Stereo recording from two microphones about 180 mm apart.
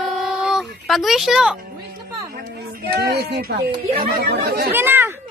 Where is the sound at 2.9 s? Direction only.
60° right (ahead or behind).